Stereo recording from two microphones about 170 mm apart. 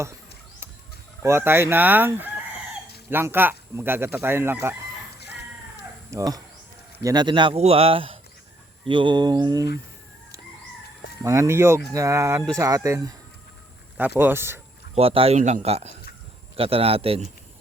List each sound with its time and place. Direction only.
1.2 s speech: 15° right (ahead or behind)
6.1 s speech: 20° right (ahead or behind)
11.2 s speech: 20° right (ahead or behind)
14.2 s speech: 15° right (ahead or behind)
14.9 s speech: 35° right (ahead or behind)